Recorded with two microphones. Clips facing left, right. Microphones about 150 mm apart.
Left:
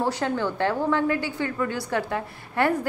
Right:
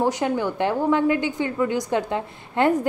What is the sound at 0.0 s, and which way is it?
A woman's voice, 15° right (ahead or behind).